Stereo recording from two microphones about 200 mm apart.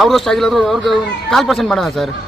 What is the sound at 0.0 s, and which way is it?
Speech, centre (ahead or behind).